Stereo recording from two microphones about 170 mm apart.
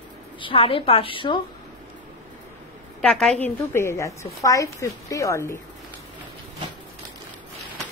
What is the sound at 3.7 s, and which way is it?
A woman's voice, 15° left (ahead or behind).